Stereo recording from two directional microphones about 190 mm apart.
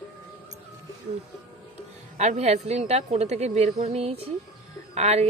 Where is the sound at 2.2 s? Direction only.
35° right (ahead or behind).